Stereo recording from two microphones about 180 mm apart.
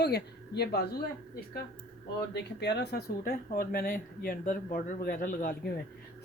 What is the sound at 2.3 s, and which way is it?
Speech, 70° left (ahead or behind).